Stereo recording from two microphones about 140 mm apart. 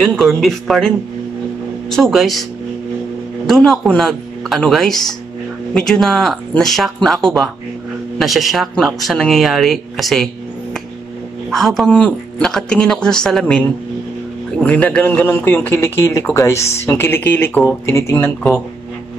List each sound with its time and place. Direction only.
0.0 s speech: centre (ahead or behind)
3.4 s a man's voice: centre (ahead or behind); by 18.3 s 20° left (ahead or behind)